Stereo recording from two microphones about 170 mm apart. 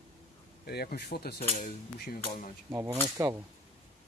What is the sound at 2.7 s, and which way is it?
Speech, 15° right (ahead or behind).